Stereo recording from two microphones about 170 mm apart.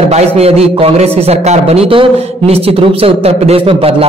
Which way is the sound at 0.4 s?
35° right (ahead or behind).